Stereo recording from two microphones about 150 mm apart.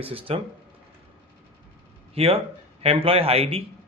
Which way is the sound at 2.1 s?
40° right (ahead or behind).